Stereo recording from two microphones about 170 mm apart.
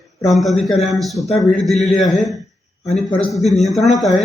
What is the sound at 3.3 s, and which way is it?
Speech, centre (ahead or behind).